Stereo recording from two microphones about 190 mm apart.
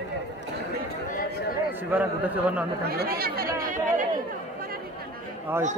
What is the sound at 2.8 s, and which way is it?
Chatter, 55° right (ahead or behind).